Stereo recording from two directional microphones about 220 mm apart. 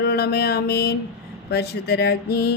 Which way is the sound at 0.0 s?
45° left (ahead or behind).